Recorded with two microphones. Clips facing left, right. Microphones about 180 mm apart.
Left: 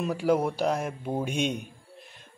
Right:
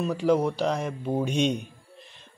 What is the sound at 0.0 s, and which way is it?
Speech, 10° left (ahead or behind).